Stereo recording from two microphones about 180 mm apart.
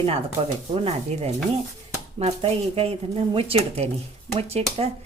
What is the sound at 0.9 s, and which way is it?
Speech, 35° right (ahead or behind).